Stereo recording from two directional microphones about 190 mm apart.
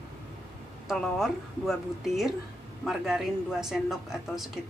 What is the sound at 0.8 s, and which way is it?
Speech, centre (ahead or behind).